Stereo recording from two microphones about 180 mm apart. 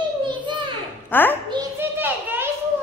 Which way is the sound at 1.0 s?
10° left (ahead or behind).